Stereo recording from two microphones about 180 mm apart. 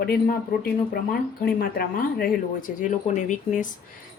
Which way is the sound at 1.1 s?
55° left (ahead or behind).